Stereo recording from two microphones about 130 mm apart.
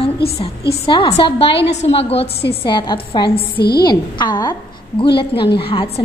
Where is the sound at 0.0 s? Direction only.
45° left (ahead or behind).